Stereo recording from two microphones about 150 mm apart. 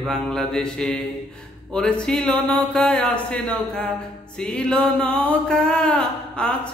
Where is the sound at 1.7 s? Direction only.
5° left (ahead or behind).